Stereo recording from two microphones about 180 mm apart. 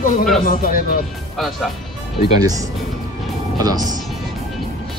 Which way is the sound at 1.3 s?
Centre (ahead or behind).